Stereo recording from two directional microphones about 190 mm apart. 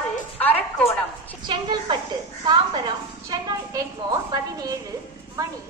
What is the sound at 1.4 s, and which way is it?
A woman's voice, 25° right (ahead or behind).